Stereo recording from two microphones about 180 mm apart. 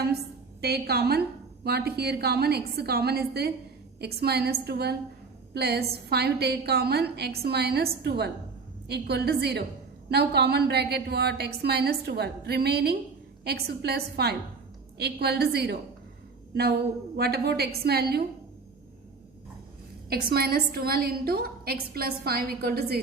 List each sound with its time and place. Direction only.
0.6 s a woman's voice: 60° right (ahead or behind)
17.2 s a woman's voice: 60° right (ahead or behind)
20.1 s a woman's voice: 60° right (ahead or behind)